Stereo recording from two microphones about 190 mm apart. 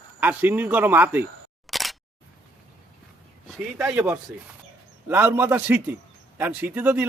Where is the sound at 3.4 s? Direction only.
Centre (ahead or behind).